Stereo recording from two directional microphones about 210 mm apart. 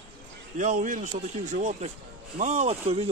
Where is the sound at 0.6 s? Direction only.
35° right (ahead or behind).